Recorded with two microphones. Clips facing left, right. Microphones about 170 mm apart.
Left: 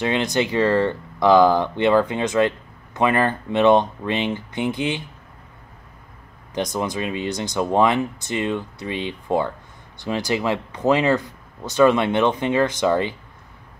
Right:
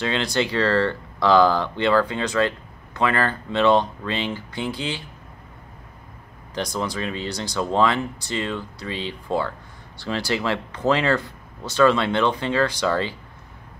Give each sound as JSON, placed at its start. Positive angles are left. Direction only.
{"t": 0.0, "sound": "speech", "side_deg": 20}
{"t": 6.5, "sound": "speech", "side_deg": 20}